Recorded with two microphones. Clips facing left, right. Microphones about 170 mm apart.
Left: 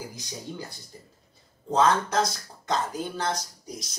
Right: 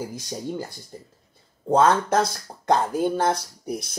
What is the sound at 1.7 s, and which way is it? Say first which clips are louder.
A woman's voice: right 4 dB; 50° right (ahead or behind).